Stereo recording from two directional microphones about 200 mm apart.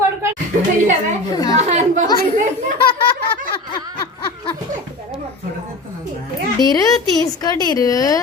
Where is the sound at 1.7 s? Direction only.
35° right (ahead or behind).